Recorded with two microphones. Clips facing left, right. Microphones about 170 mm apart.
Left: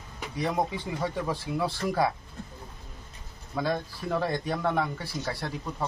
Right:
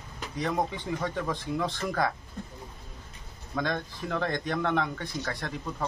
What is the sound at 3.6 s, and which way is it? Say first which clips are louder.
Speech: left 1 dB; 10° left (ahead or behind).